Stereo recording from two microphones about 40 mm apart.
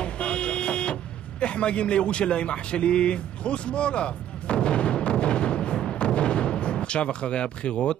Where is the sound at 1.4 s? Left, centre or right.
Left.